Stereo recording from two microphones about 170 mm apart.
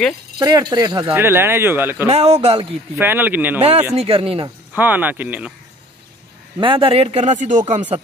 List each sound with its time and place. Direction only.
0.4 s speech: 20° right (ahead or behind)
1.1 s speech: 15° right (ahead or behind)
2.0 s speech: 40° right (ahead or behind)
3.0 s speech: 10° right (ahead or behind)
3.9 s speech: 35° right (ahead or behind)
4.7 s speech: 10° right (ahead or behind)
6.6 s speech: 30° right (ahead or behind)